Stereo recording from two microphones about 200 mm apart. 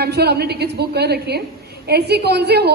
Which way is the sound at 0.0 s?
55° right (ahead or behind).